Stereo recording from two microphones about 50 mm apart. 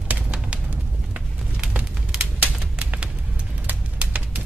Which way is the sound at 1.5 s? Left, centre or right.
Right.